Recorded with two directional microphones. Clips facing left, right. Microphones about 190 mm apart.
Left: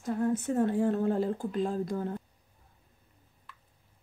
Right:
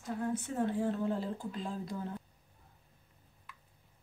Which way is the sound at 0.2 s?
45° left (ahead or behind).